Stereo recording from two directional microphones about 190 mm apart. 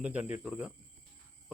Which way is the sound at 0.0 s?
5° right (ahead or behind).